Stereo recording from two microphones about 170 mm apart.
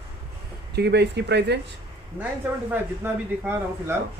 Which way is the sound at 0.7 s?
80° right.